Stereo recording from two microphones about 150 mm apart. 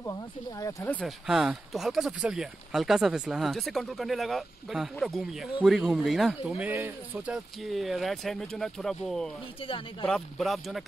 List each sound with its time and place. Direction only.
0.0 s speech: 25° left (ahead or behind)
1.0 s speech: 5° right (ahead or behind)
7.3 s speech: centre (ahead or behind)